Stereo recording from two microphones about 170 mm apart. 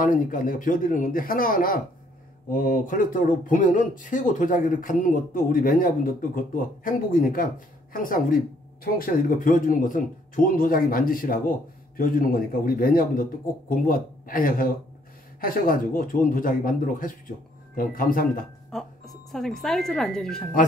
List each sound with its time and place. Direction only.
0.0 s a man's voice: 50° left (ahead or behind)
18.7 s speech: centre (ahead or behind)